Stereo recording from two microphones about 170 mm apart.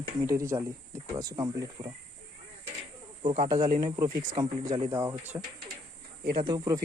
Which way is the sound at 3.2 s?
50° right (ahead or behind).